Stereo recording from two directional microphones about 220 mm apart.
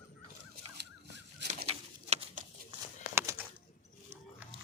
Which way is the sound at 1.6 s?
30° right (ahead or behind).